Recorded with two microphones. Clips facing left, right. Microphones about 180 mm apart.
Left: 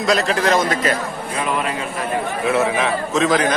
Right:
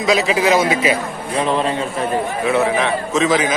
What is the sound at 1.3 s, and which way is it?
Speech, 30° right (ahead or behind).